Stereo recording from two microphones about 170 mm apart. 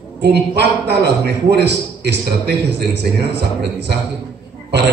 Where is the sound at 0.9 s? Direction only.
75° right (ahead or behind).